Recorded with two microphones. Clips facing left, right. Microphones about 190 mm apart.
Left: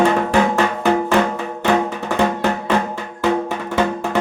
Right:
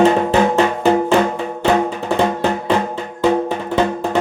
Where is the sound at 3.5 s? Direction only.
20° right (ahead or behind).